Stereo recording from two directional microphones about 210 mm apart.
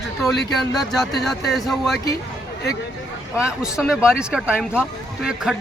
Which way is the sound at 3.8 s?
5° left (ahead or behind).